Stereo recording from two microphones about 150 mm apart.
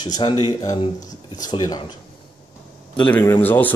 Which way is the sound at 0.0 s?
30° left (ahead or behind).